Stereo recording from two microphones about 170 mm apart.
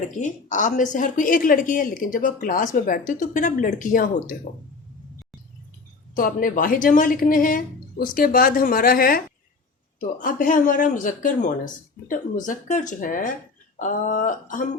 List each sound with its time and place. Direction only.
0.2 s speech: 50° left (ahead or behind)
6.1 s speech: 55° left (ahead or behind)